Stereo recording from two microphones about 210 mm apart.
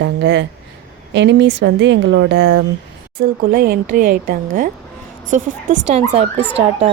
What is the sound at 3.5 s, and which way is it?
A woman's voice, 45° right (ahead or behind).